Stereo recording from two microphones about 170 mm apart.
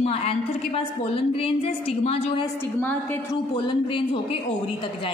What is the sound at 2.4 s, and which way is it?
Speech, 10° left (ahead or behind).